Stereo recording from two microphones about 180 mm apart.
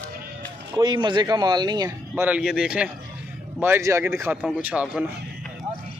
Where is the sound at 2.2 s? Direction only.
5° right (ahead or behind).